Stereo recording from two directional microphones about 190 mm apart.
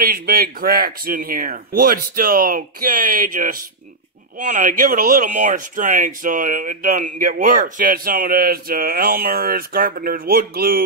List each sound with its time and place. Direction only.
0.0 s speech: 50° right (ahead or behind)